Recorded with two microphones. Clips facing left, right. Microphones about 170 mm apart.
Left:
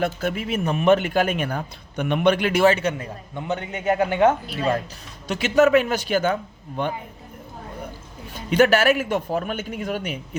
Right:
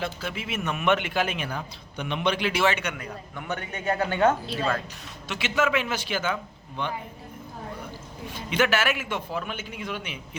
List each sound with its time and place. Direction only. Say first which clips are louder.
0.0 s a man's voice: left 8 dB; 50° left (ahead or behind); by 4.4 s 20° left (ahead or behind)
5.3 s a man's voice: left 9 dB; 40° left (ahead or behind)
8.4 s a man's voice: left 7 dB; 40° left (ahead or behind)